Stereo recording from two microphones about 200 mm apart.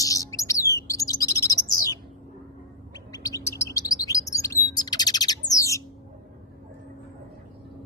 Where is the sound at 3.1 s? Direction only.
15° left (ahead or behind).